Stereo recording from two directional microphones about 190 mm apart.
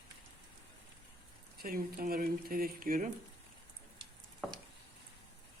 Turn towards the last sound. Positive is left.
turn(degrees=0)  # may be behind; listen again after turning